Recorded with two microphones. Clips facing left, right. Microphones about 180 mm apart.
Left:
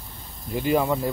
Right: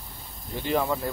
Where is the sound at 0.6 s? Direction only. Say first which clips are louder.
Left 4 dB; 10° left (ahead or behind).